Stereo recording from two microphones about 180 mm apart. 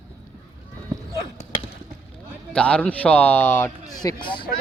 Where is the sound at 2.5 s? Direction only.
5° left (ahead or behind); by 4.5 s 25° left (ahead or behind).